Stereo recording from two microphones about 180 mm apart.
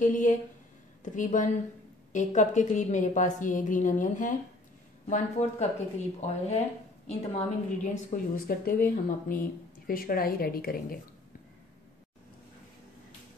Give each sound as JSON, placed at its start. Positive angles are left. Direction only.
{"t": 0.0, "sound": "a woman's voice", "side_deg": 45}